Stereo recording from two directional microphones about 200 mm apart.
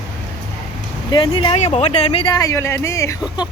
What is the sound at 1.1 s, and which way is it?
Speech, 25° left (ahead or behind).